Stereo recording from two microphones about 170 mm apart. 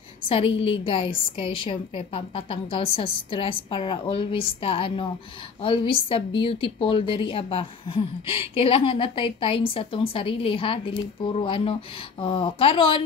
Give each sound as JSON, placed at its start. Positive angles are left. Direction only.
{"t": 0.3, "sound": "a woman's voice", "side_deg": 35}